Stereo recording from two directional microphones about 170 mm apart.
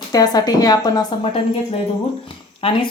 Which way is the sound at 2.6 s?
30° left (ahead or behind).